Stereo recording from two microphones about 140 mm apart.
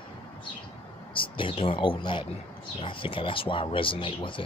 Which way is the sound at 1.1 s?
35° left (ahead or behind).